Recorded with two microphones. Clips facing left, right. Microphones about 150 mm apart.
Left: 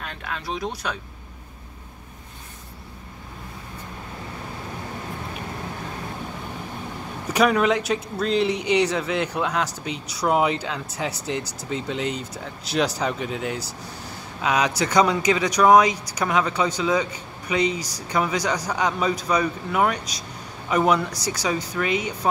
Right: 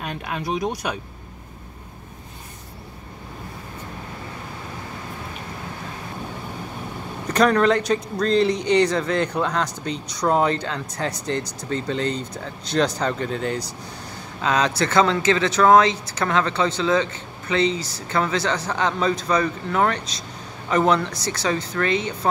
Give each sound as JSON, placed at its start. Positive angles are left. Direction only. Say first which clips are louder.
{"t": 0.0, "sound": "speech", "louder": "right 4 dB", "side_deg": -15}
{"t": 7.2, "sound": "speech", "louder": "right 2 dB", "side_deg": 10}